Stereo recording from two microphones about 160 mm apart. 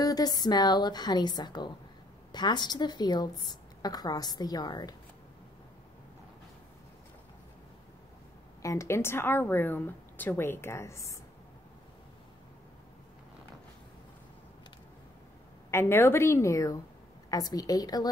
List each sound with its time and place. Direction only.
0.0 s a woman's voice: 25° left (ahead or behind)
8.6 s a woman's voice: 15° left (ahead or behind)
15.7 s a woman's voice: 15° left (ahead or behind)